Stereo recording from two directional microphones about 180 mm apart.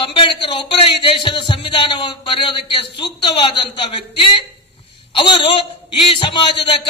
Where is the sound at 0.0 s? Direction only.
30° left (ahead or behind).